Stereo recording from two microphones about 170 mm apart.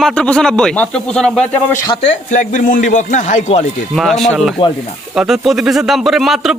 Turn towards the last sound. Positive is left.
turn(degrees=0)  # may be behind; listen again after turning